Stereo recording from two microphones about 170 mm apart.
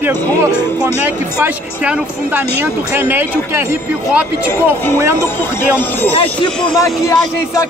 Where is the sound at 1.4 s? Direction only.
10° right (ahead or behind).